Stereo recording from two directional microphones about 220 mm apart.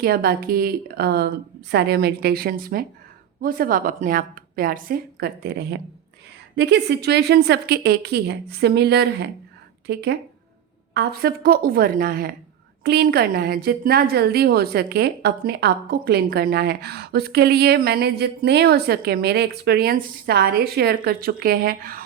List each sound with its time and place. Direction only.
0.0 s a woman's voice: 45° right (ahead or behind)